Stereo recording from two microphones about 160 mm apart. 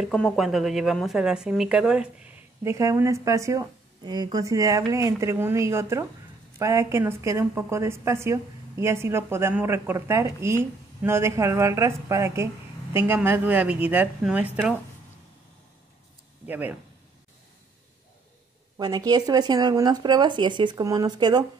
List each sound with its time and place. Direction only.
0.0 s speech: centre (ahead or behind)
2.6 s a woman's voice: 20° right (ahead or behind)
16.4 s speech: 10° right (ahead or behind)
18.8 s speech: 25° right (ahead or behind)